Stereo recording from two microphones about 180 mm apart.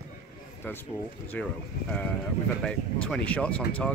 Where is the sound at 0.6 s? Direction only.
10° left (ahead or behind).